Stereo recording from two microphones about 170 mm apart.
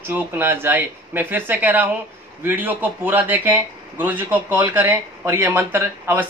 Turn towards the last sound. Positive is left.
turn(degrees=-15)  # may be behind; listen again after turning